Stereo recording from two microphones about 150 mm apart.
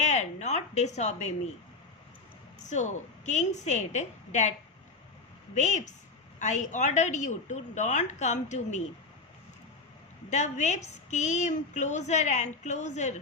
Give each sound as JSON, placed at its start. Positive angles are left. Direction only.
{"t": 0.0, "sound": "a sound", "side_deg": 50}
{"t": 2.6, "sound": "a woman's voice", "side_deg": 55}
{"t": 5.5, "sound": "a woman's voice", "side_deg": 55}
{"t": 10.2, "sound": "a woman's voice", "side_deg": 50}